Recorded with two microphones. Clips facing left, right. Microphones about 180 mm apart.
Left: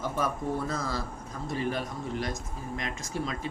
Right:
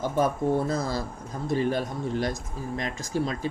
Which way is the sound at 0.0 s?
30° right (ahead or behind).